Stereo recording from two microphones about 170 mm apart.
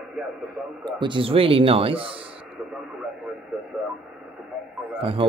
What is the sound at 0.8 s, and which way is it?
Speech, 25° right (ahead or behind).